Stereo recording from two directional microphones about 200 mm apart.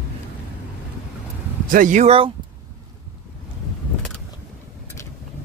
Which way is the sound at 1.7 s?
40° right (ahead or behind).